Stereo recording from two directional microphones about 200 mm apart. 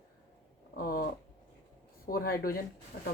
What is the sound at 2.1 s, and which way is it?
Speech, 45° left (ahead or behind).